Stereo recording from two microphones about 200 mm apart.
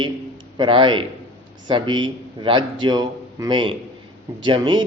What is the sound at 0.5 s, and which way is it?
A man's voice, 25° right (ahead or behind).